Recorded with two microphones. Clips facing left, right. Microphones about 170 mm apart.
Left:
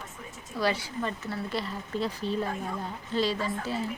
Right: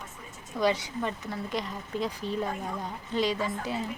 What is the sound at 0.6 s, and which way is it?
Speech, 20° right (ahead or behind).